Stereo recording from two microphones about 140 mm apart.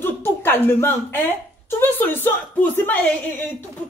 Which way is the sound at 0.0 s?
15° left (ahead or behind).